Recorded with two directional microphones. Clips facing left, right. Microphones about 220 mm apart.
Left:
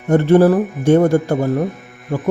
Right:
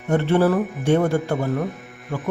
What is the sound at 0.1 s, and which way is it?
Speech, 45° left (ahead or behind).